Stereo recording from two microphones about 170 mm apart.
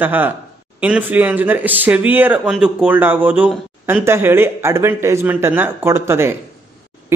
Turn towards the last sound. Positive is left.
turn(degrees=-15)  # may be behind; listen again after turning